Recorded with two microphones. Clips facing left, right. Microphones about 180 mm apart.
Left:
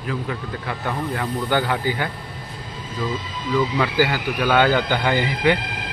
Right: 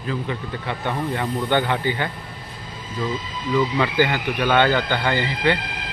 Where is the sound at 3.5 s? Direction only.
5° left (ahead or behind).